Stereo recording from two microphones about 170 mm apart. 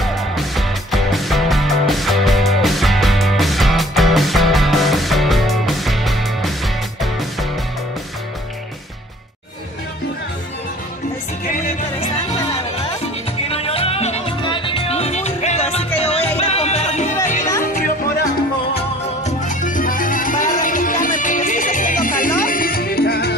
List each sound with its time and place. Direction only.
0.0 s music: centre (ahead or behind)
13.5 s music: 35° left (ahead or behind)
19.2 s music: 50° left (ahead or behind); by 23.3 s 70° left (ahead or behind)